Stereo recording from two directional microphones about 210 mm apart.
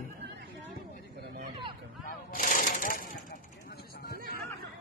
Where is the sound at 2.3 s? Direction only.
40° left (ahead or behind).